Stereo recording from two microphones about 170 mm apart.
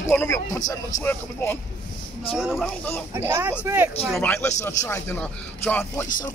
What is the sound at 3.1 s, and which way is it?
Speech, 15° right (ahead or behind).